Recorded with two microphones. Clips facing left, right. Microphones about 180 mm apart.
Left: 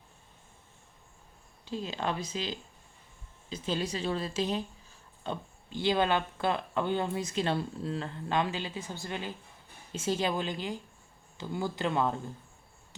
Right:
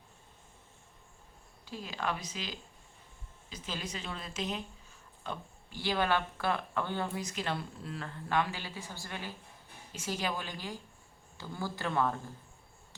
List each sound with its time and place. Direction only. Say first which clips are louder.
1.6 s speech: left 4 dB; 25° left (ahead or behind)